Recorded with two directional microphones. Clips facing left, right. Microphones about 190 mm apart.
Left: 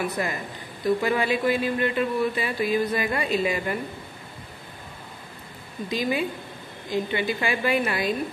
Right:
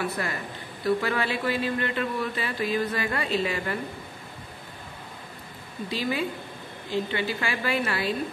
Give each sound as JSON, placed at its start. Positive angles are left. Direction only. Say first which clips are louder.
{"t": 0.0, "sound": "speech", "louder": "left 2 dB", "side_deg": 15}
{"t": 5.9, "sound": "speech", "louder": "left 3 dB", "side_deg": 15}